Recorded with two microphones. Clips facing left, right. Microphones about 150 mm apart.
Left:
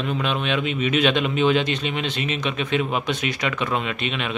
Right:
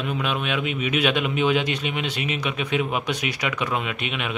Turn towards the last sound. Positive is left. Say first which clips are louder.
# left 2 dB
turn(degrees=-10)  # may be behind; listen again after turning